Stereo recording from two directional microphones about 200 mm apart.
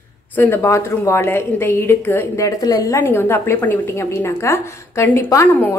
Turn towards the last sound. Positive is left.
turn(degrees=15)  # may be behind; listen again after turning